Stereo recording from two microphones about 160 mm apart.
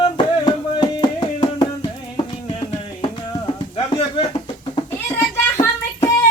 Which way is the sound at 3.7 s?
40° left (ahead or behind).